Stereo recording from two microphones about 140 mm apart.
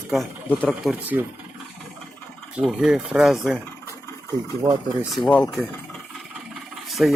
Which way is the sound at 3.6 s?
20° left (ahead or behind).